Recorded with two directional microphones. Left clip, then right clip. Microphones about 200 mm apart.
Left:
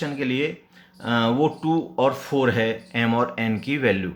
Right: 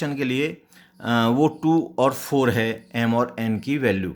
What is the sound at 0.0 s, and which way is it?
Speech, 45° right (ahead or behind).